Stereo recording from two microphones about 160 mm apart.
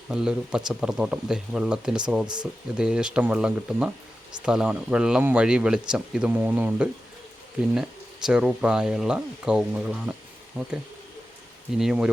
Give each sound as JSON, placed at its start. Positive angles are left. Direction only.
{"t": 0.1, "sound": "speech", "side_deg": -5}
{"t": 2.2, "sound": "speech", "side_deg": -25}
{"t": 2.7, "sound": "speech", "side_deg": -5}
{"t": 11.8, "sound": "speech", "side_deg": -5}